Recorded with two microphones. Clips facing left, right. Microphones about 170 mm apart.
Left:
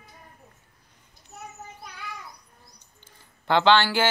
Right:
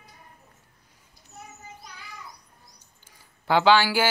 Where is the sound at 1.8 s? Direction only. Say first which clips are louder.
Left 3 dB; 60° left (ahead or behind).